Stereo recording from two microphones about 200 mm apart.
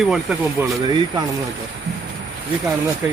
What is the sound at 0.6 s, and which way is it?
Speech, 10° right (ahead or behind).